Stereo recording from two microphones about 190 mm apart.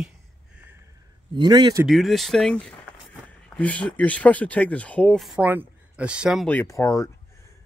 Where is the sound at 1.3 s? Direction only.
25° right (ahead or behind).